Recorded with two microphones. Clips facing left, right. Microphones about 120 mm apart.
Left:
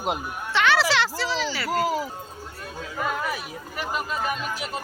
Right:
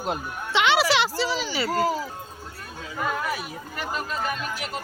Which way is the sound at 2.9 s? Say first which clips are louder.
Even; centre (ahead or behind).